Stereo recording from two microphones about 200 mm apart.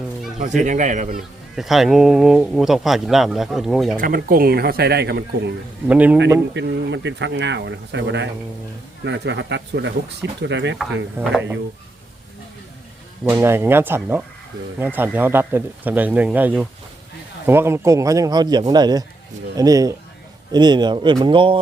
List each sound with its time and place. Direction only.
0.3 s speech: 40° right (ahead or behind)
1.5 s a man's voice: centre (ahead or behind)
3.9 s speech: 45° right (ahead or behind)
5.9 s speech: 10° right (ahead or behind)
6.5 s speech: 60° right (ahead or behind)
11.2 s a man's voice: centre (ahead or behind)
13.2 s speech: 10° right (ahead or behind)